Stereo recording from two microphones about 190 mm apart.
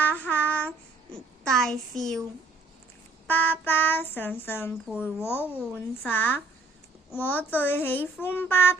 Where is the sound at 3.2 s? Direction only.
10° left (ahead or behind).